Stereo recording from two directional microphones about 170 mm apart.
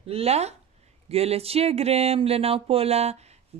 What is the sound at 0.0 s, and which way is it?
Speech, 35° right (ahead or behind).